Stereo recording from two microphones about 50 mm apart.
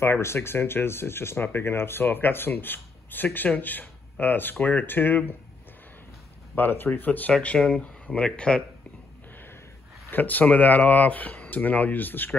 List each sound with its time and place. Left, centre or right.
0.0 s speech: left
6.5 s speech: left
7.6 s speech: left
10.1 s speech: left